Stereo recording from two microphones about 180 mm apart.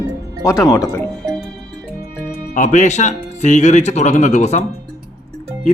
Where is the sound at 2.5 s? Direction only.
45° left (ahead or behind).